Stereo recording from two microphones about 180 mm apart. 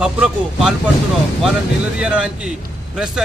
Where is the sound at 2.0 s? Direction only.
5° right (ahead or behind).